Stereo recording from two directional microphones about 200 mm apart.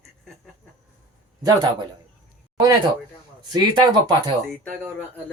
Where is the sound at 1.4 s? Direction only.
20° right (ahead or behind).